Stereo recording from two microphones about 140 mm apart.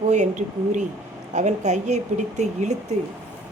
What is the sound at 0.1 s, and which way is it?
Speech, 60° right (ahead or behind).